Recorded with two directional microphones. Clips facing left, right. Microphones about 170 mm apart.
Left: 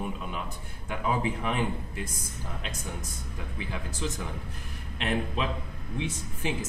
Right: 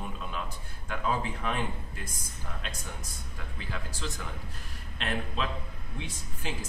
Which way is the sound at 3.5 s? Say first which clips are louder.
Left 3 dB; 15° left (ahead or behind).